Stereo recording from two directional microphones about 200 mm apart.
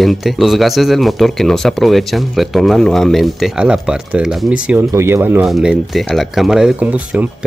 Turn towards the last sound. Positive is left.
turn(degrees=-5)  # may be behind; listen again after turning